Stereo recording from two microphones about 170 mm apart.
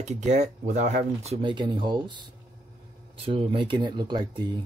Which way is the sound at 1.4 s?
30° right (ahead or behind).